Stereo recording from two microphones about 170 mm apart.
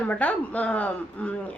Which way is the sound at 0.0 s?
10° left (ahead or behind).